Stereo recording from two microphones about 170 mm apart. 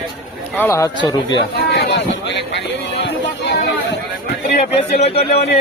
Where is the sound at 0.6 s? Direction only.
15° left (ahead or behind).